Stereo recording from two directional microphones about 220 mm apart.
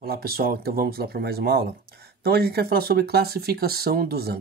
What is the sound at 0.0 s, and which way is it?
Speech, 45° right (ahead or behind).